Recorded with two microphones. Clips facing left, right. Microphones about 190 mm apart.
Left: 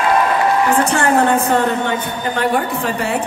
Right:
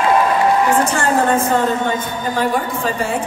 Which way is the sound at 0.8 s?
65° left (ahead or behind).